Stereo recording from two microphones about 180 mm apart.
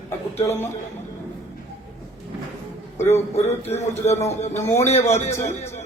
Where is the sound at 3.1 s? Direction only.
35° left (ahead or behind).